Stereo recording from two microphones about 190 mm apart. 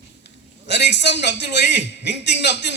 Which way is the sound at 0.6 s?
65° left (ahead or behind).